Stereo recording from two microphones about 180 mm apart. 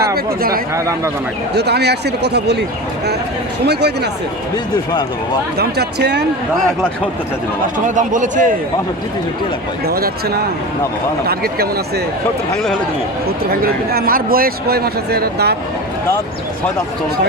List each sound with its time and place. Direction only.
0.0 s speech: 60° right (ahead or behind)
3.7 s speech: 65° right (ahead or behind)
4.5 s speech: 20° left (ahead or behind)
5.5 s speech: 65° right (ahead or behind)
7.9 s speech: 45° right (ahead or behind)
9.8 s speech: 60° right (ahead or behind)
13.5 s speech: 55° right (ahead or behind)